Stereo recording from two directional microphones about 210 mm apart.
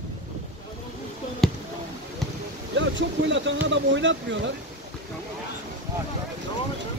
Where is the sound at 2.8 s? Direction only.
60° right (ahead or behind).